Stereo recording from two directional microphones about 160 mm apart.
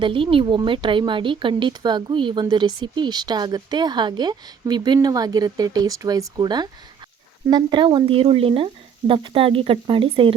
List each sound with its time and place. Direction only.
0.0 s speech: 30° right (ahead or behind)